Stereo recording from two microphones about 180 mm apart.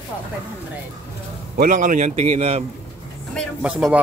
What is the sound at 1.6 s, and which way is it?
A man's voice, 45° right (ahead or behind).